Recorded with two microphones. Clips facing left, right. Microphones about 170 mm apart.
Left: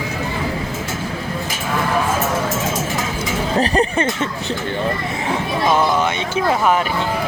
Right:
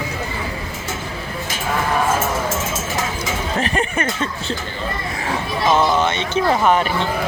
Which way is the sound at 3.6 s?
35° left (ahead or behind).